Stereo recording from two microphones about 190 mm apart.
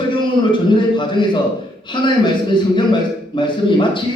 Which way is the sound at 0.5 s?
25° left (ahead or behind).